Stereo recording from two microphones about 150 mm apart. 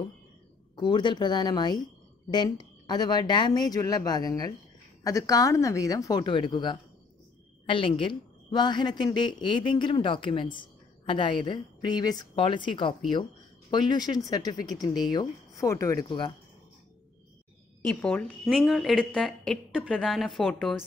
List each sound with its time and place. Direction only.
0.7 s a woman's voice: 30° left (ahead or behind)
18.0 s speech: 5° left (ahead or behind)